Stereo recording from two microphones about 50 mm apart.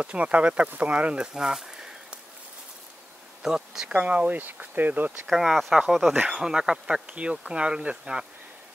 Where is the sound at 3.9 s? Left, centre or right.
Right.